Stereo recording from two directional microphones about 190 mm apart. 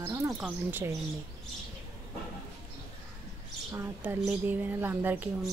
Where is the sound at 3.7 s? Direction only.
10° right (ahead or behind).